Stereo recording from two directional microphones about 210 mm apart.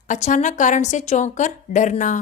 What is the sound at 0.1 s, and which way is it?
A woman's voice, 35° left (ahead or behind).